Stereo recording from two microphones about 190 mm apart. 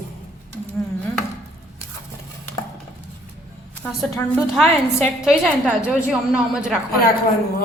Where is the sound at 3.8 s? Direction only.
5° left (ahead or behind).